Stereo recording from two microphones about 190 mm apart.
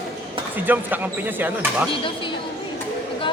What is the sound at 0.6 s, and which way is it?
Speech, 10° right (ahead or behind).